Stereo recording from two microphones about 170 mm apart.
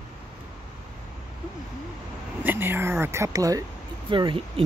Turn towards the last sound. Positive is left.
turn(degrees=-30)  # may be behind; listen again after turning